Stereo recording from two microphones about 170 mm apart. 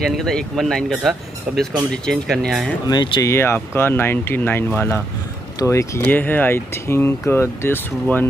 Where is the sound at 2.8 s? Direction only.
25° left (ahead or behind).